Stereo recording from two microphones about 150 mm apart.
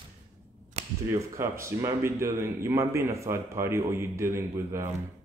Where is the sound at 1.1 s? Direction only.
20° right (ahead or behind).